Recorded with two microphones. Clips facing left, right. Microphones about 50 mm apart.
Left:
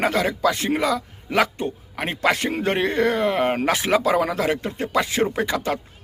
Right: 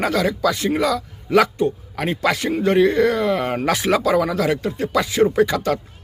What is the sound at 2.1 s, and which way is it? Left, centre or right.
A man's voice, left.